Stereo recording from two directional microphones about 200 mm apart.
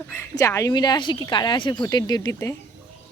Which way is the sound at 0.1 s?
15° left (ahead or behind).